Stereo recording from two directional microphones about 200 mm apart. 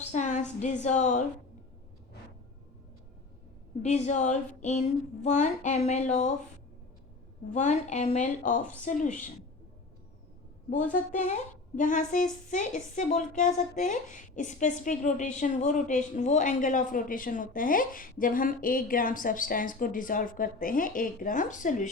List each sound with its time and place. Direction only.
0.0 s a woman's voice: 35° left (ahead or behind)
3.8 s speech: 35° left (ahead or behind)
7.5 s speech: 35° left (ahead or behind)
11.1 s speech: 40° left (ahead or behind)